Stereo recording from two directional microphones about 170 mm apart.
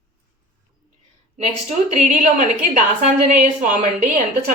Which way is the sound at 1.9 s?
45° right (ahead or behind).